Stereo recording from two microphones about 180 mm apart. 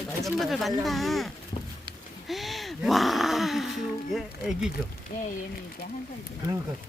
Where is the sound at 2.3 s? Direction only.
Centre (ahead or behind).